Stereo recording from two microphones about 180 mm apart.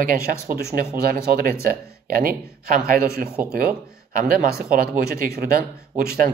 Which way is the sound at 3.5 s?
50° right (ahead or behind).